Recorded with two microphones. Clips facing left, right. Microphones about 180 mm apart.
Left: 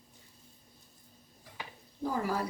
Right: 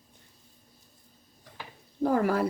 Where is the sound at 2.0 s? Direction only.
65° right (ahead or behind).